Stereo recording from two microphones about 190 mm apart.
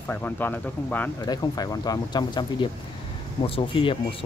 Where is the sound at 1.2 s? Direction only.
20° left (ahead or behind).